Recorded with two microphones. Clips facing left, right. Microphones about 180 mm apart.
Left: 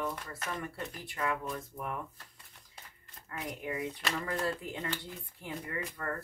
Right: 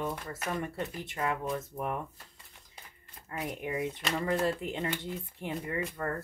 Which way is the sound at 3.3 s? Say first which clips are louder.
Right 3 dB; 25° right (ahead or behind).